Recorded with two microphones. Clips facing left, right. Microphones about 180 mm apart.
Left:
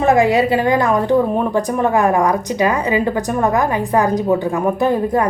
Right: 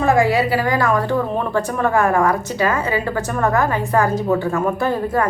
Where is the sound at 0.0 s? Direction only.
20° left (ahead or behind).